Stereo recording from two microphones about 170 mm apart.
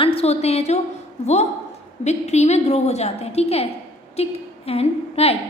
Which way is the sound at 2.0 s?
40° left (ahead or behind).